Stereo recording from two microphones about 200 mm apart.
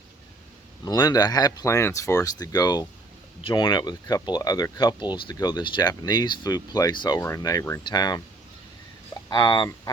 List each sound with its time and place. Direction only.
0.9 s speech: 20° left (ahead or behind)
9.3 s speech: 20° left (ahead or behind)